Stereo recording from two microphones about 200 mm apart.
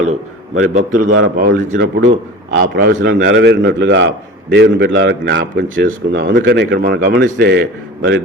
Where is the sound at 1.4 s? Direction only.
45° right (ahead or behind).